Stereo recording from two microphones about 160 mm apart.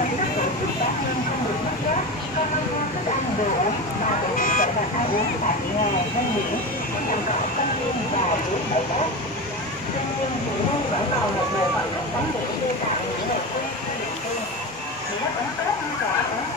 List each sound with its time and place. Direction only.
4.4 s vehicle: 60° left (ahead or behind)